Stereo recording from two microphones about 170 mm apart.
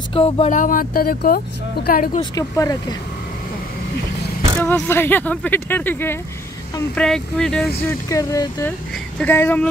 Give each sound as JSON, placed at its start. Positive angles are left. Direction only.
{"t": 0.1, "sound": "speech", "side_deg": 35}
{"t": 0.5, "sound": "speech", "side_deg": 50}
{"t": 2.3, "sound": "speech", "side_deg": 20}
{"t": 4.6, "sound": "speech", "side_deg": 15}
{"t": 7.8, "sound": "speech", "side_deg": 20}